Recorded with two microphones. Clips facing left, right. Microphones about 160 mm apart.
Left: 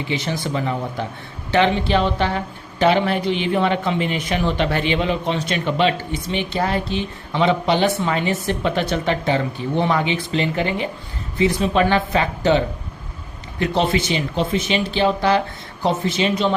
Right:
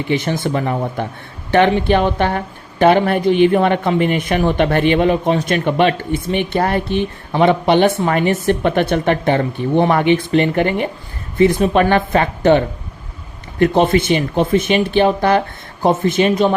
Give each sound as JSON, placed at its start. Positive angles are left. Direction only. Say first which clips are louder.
{"t": 0.1, "sound": "speech", "louder": "right 7 dB", "side_deg": -55}